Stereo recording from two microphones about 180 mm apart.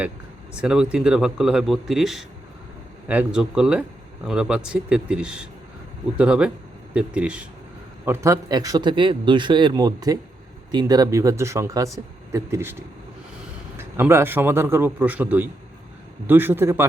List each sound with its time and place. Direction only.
0.6 s a man's voice: 5° right (ahead or behind)
13.7 s speech: 15° right (ahead or behind)